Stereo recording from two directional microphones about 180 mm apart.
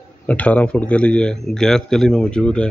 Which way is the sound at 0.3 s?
10° left (ahead or behind).